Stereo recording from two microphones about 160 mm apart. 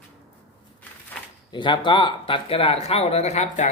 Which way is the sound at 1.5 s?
30° left (ahead or behind).